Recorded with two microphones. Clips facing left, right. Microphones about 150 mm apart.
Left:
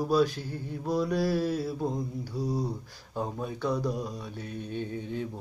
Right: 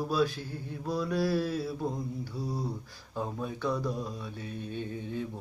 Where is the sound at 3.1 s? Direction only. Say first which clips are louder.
Left 2 dB; 15° left (ahead or behind).